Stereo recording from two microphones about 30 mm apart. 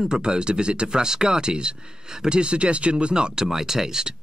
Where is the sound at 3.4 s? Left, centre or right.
Centre.